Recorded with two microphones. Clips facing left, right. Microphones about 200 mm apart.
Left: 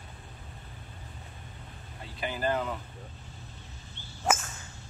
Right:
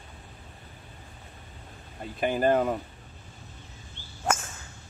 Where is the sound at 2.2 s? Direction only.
50° right (ahead or behind).